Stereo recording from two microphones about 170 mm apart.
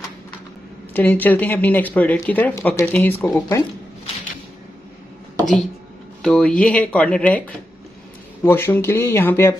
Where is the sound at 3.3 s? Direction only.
25° left (ahead or behind).